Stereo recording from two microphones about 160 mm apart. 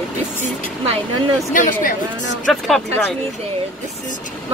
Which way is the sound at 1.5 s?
55° left (ahead or behind).